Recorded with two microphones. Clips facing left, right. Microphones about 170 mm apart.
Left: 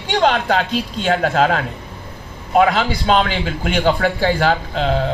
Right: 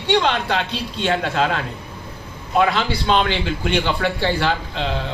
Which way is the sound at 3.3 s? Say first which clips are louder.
Even; 45° left (ahead or behind).